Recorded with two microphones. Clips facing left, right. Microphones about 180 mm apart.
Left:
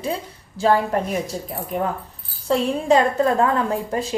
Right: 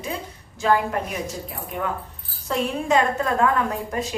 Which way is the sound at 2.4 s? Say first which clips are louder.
Left 5 dB; 30° left (ahead or behind).